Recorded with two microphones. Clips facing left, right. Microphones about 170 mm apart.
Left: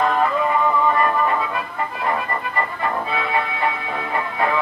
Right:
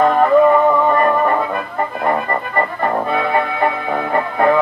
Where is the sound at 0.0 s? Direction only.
50° right (ahead or behind).